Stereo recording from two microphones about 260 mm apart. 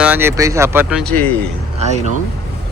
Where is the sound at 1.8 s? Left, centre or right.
Right.